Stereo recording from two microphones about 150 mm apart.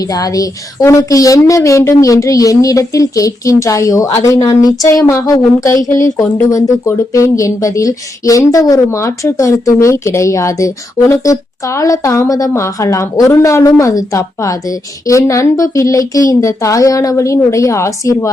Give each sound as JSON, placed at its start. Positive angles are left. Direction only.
{"t": 0.0, "sound": "speech", "side_deg": 25}